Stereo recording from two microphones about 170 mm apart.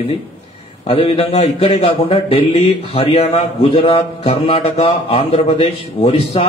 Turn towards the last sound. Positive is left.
turn(degrees=35)  # may be behind; listen again after turning